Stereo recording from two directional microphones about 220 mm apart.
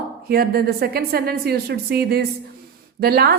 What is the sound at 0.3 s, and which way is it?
A woman's voice, 45° right (ahead or behind).